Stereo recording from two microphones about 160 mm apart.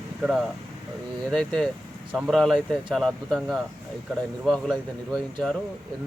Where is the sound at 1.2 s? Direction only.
5° left (ahead or behind).